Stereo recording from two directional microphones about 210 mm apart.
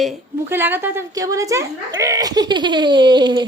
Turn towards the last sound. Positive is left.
turn(degrees=-20)  # may be behind; listen again after turning